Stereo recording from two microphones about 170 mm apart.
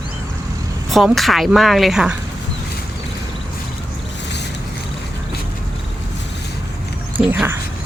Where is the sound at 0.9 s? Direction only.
Centre (ahead or behind).